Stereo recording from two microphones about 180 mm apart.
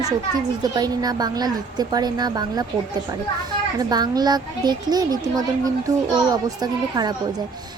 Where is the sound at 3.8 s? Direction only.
20° right (ahead or behind).